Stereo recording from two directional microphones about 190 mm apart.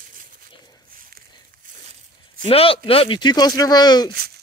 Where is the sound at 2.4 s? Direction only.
30° left (ahead or behind).